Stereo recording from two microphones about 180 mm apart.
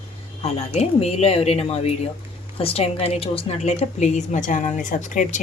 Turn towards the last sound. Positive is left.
turn(degrees=45)  # may be behind; listen again after turning